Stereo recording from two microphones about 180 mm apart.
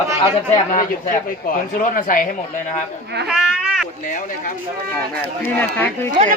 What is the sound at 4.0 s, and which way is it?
Speech, 45° left (ahead or behind).